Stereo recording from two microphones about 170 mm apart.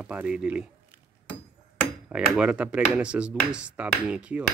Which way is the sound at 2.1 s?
5° right (ahead or behind).